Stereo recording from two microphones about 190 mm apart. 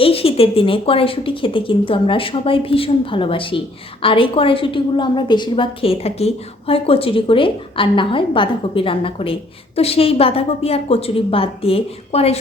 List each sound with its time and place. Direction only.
0.0 s a woman's voice: 30° left (ahead or behind)